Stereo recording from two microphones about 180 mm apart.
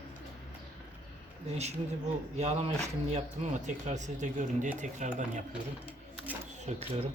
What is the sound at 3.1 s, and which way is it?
Speech, 40° right (ahead or behind).